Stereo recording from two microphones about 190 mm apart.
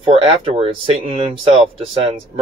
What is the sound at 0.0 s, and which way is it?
Speech, 30° right (ahead or behind).